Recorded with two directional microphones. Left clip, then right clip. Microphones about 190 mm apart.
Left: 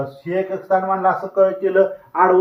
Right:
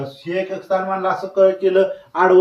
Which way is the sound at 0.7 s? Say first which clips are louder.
Left 3 dB; 15° right (ahead or behind).